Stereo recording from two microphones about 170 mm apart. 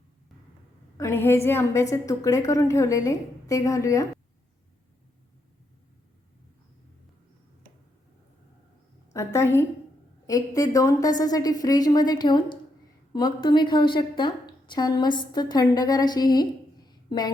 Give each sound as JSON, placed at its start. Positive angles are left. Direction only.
{"t": 0.9, "sound": "a woman's voice", "side_deg": 15}
{"t": 9.1, "sound": "a woman's voice", "side_deg": 15}